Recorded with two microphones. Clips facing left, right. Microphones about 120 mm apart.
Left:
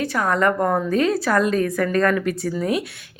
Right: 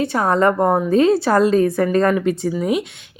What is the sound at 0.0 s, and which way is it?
A woman's voice, 25° right (ahead or behind).